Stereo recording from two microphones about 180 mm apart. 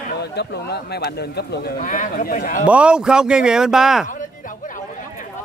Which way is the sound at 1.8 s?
45° left (ahead or behind).